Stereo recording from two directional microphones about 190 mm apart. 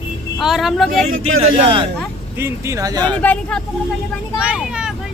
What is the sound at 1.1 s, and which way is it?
Speech, 90° right.